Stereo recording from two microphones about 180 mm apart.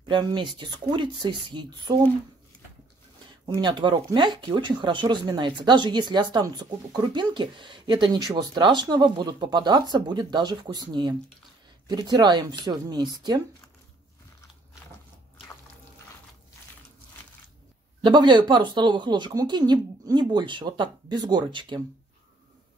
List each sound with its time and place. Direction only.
0.1 s speech: 25° right (ahead or behind)
3.4 s speech: 25° right (ahead or behind)
18.0 s speech: 25° right (ahead or behind)